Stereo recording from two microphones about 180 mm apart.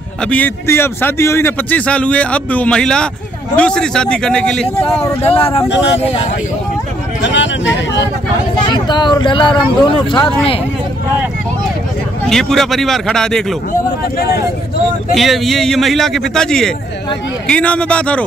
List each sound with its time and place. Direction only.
0.2 s a man's voice: 10° left (ahead or behind)
5.2 s speech: 30° left (ahead or behind)
7.2 s speech: 85° left
8.6 s speech: 25° left (ahead or behind)
12.3 s a man's voice: centre (ahead or behind)
15.1 s a man's voice: centre (ahead or behind)